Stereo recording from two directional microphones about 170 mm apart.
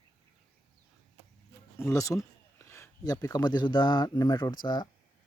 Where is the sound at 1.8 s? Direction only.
20° left (ahead or behind).